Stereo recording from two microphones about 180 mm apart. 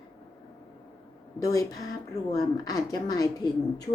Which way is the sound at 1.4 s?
20° left (ahead or behind).